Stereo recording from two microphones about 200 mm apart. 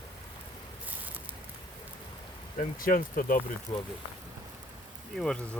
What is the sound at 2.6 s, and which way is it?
Speech, 45° left (ahead or behind).